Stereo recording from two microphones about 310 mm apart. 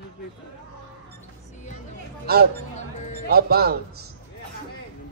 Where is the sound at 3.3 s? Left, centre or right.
Right.